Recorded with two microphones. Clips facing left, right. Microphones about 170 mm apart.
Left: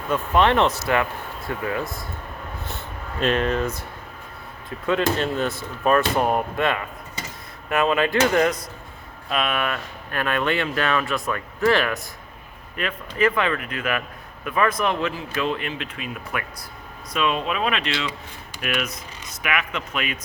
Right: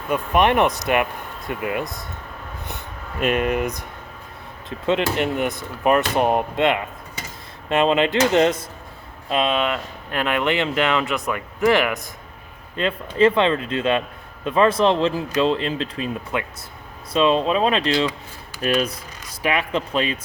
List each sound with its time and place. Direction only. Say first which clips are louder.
0.1 s speech: right 1 dB; 15° right (ahead or behind)
5.0 s speech: right 1 dB; 15° right (ahead or behind)
12.7 s speech: right 5 dB; 25° right (ahead or behind)